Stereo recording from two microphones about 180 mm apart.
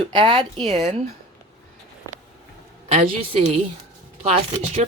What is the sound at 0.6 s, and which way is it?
Speech, centre (ahead or behind).